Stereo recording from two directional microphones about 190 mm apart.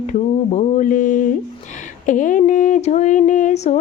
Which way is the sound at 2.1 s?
40° left (ahead or behind).